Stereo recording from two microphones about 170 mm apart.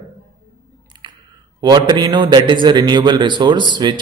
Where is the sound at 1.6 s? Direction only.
25° right (ahead or behind).